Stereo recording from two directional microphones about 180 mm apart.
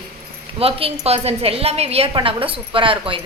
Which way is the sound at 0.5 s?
30° right (ahead or behind).